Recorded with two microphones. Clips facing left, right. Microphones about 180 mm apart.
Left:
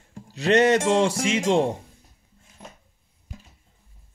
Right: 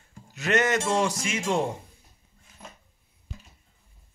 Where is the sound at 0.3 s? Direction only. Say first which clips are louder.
Left 6 dB; 30° left (ahead or behind).